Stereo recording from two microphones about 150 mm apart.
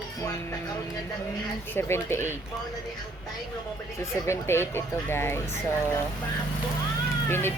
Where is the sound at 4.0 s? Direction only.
20° left (ahead or behind).